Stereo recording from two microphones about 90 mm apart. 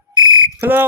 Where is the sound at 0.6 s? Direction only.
20° right (ahead or behind).